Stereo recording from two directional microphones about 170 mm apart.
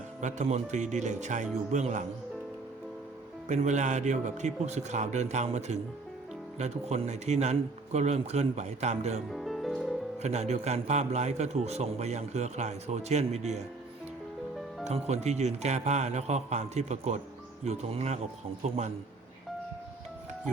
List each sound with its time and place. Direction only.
0.2 s a man's voice: 45° right (ahead or behind)
3.5 s a man's voice: 45° right (ahead or behind)
9.3 s music: centre (ahead or behind)
10.2 s a man's voice: 40° right (ahead or behind)
14.8 s a man's voice: 40° right (ahead or behind)